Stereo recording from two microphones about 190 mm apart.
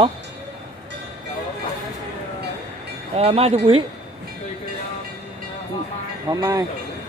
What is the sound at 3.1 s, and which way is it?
Speech, 35° right (ahead or behind).